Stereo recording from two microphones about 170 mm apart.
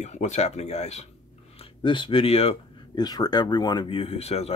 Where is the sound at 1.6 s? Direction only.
30° left (ahead or behind).